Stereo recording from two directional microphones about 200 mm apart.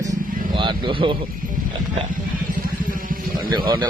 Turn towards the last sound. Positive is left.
turn(degrees=-20)  # may be behind; listen again after turning